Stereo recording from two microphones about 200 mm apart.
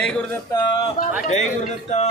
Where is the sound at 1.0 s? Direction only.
45° left (ahead or behind).